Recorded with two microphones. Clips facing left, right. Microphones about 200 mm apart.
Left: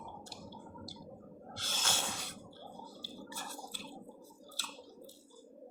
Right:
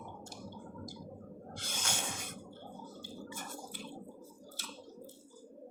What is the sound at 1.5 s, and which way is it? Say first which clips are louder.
Snort: left 1 dB; 15° right (ahead or behind).